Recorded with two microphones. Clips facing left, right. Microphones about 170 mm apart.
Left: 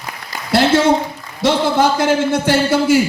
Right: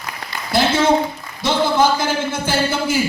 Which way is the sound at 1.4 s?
80° left.